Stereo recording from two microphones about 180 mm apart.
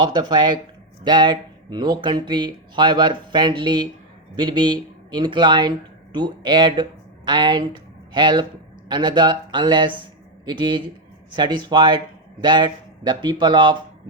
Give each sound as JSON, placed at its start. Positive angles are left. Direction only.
{"t": 0.0, "sound": "a man's voice", "side_deg": -25}